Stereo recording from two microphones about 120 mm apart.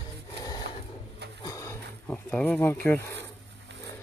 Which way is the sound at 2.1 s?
10° left (ahead or behind).